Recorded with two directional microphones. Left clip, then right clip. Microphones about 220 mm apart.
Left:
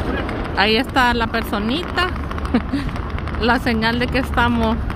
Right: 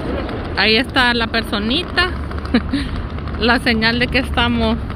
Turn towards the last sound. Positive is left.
turn(degrees=15)  # may be behind; listen again after turning